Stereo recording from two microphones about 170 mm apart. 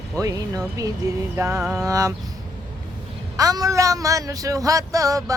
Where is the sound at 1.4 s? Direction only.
10° right (ahead or behind).